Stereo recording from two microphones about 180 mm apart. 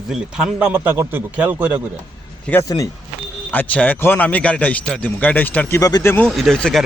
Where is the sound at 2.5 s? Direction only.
15° left (ahead or behind).